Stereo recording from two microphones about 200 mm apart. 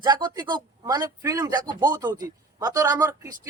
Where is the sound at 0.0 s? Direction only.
20° right (ahead or behind).